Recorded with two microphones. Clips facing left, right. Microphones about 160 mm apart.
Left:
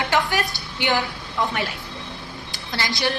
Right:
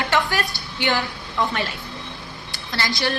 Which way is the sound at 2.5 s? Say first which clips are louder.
Right 1 dB; 20° left (ahead or behind).